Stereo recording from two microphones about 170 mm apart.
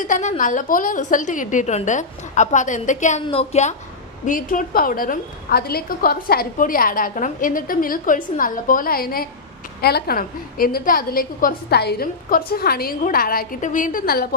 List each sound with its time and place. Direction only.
0.0 s a woman's voice: 45° left (ahead or behind)
4.3 s a woman's voice: 55° left (ahead or behind)